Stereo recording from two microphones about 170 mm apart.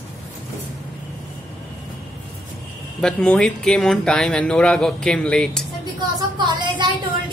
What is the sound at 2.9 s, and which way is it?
Speech, 5° left (ahead or behind).